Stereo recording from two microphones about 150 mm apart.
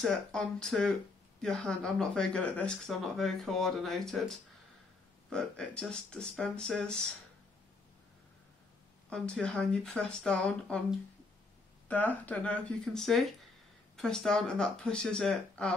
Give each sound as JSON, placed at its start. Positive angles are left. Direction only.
{"t": 0.0, "sound": "speech", "side_deg": 5}
{"t": 5.3, "sound": "speech", "side_deg": 5}
{"t": 9.1, "sound": "speech", "side_deg": 5}
{"t": 11.9, "sound": "speech", "side_deg": 10}